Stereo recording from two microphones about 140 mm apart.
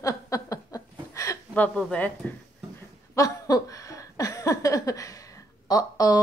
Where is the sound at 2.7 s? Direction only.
25° left (ahead or behind).